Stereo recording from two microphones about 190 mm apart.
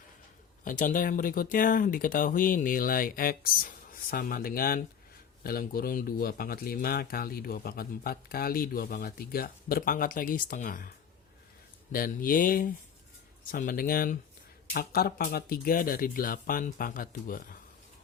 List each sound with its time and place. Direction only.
0.6 s speech: 45° left (ahead or behind)